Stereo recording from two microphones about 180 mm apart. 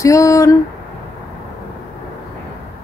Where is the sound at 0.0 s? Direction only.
15° left (ahead or behind).